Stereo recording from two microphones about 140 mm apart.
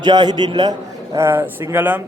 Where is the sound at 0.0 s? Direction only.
30° right (ahead or behind).